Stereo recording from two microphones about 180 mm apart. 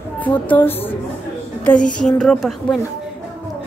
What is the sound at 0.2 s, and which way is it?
Speech, 10° left (ahead or behind).